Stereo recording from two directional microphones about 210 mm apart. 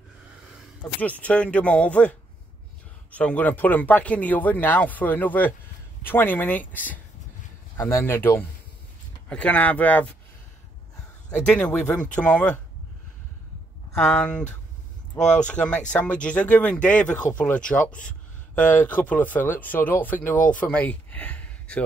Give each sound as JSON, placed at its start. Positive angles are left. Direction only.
{"t": 1.0, "sound": "speech", "side_deg": 5}
{"t": 11.2, "sound": "speech", "side_deg": 5}
{"t": 13.9, "sound": "speech", "side_deg": 5}
{"t": 15.1, "sound": "speech", "side_deg": 35}
{"t": 15.4, "sound": "speech", "side_deg": 5}
{"t": 18.0, "sound": "a sound", "side_deg": 5}
{"t": 18.9, "sound": "speech", "side_deg": 10}